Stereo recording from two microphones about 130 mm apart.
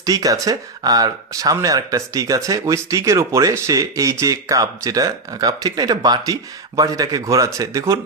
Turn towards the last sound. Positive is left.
turn(degrees=-25)  # may be behind; listen again after turning